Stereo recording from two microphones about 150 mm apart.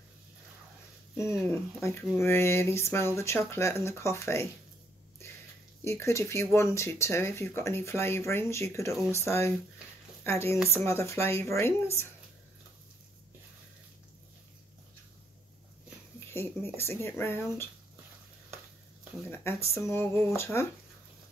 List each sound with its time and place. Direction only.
1.5 s speech: 20° left (ahead or behind)
5.9 s speech: 20° left (ahead or behind)
16.3 s speech: 15° left (ahead or behind)
19.2 s speech: 15° left (ahead or behind)